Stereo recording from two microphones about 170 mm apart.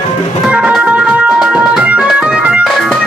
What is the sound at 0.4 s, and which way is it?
Music, 5° right (ahead or behind).